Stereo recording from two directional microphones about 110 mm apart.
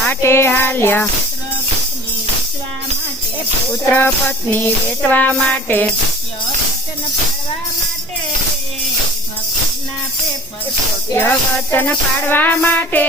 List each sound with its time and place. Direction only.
0.1 s music: 25° left (ahead or behind)
3.8 s music: 20° left (ahead or behind)
11.1 s music: 20° left (ahead or behind)